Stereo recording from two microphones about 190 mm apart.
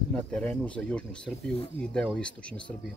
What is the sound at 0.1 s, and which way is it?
Speech, 5° left (ahead or behind).